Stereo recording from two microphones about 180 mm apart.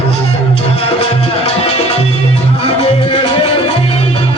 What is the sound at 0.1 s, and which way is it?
Music, 35° left (ahead or behind).